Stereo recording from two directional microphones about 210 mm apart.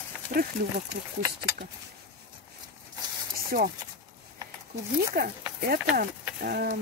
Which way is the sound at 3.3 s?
45° right (ahead or behind).